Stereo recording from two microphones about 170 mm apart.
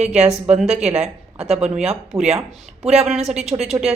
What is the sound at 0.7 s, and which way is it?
Speech, 40° right (ahead or behind).